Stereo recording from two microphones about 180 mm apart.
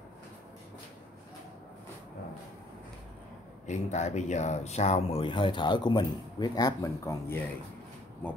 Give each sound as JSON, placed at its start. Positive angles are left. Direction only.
{"t": 3.6, "sound": "speech", "side_deg": 40}